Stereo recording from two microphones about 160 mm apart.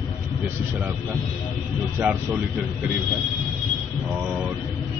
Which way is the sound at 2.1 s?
10° right (ahead or behind).